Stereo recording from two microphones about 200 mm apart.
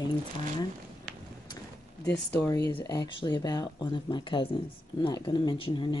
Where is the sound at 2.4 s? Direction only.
15° left (ahead or behind).